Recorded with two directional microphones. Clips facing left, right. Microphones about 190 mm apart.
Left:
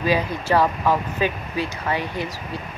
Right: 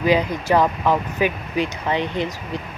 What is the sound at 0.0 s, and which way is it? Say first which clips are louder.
Speech: right 3 dB; 15° right (ahead or behind).